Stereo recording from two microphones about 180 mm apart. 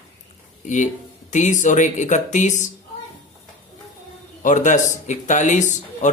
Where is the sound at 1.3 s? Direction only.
45° left (ahead or behind).